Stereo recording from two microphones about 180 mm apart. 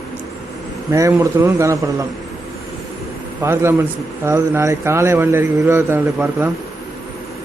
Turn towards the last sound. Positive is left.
turn(degrees=-10)  # may be behind; listen again after turning